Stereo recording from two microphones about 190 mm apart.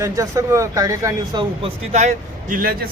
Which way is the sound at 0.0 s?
15° right (ahead or behind).